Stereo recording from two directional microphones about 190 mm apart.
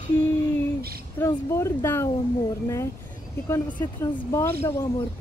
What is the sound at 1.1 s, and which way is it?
Speech, 15° left (ahead or behind).